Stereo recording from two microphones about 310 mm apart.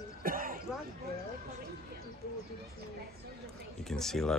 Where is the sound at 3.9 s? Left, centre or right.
Centre.